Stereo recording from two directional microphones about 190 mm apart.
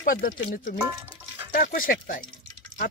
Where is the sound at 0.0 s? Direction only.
45° left (ahead or behind).